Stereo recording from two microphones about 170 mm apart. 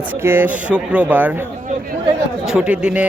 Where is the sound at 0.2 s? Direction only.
15° right (ahead or behind).